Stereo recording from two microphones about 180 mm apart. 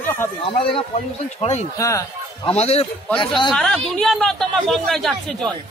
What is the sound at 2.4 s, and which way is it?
A man's voice, 35° left (ahead or behind).